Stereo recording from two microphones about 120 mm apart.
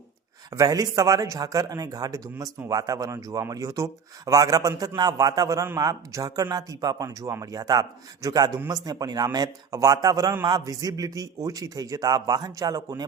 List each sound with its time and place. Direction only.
0.5 s a man's voice: 30° right (ahead or behind)